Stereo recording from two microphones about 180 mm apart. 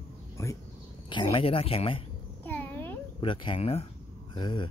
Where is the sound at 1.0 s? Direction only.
30° left (ahead or behind).